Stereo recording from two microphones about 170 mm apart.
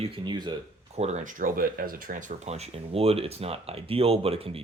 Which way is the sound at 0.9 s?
40° right (ahead or behind).